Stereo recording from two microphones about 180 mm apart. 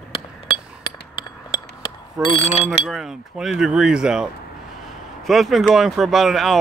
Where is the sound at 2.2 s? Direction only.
35° left (ahead or behind).